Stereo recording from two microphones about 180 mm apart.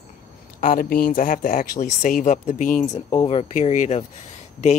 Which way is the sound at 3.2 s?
35° left (ahead or behind).